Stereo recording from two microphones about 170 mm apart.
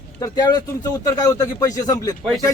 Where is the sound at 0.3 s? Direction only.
25° left (ahead or behind).